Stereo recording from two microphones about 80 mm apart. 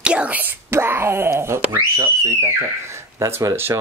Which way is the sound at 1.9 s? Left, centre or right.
Right.